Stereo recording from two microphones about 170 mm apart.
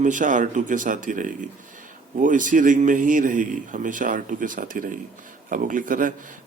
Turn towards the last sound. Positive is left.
turn(degrees=-50)  # may be behind; listen again after turning